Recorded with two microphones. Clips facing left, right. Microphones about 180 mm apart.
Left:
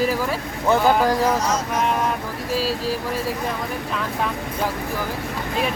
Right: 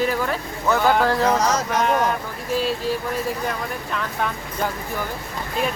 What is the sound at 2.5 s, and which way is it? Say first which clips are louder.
Speech: right 1 dB; 5° left (ahead or behind).